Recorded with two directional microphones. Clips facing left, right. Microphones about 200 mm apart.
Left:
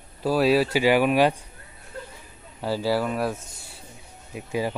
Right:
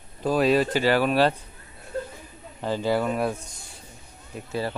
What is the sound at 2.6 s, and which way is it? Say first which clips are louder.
Speech: even; 5° left (ahead or behind).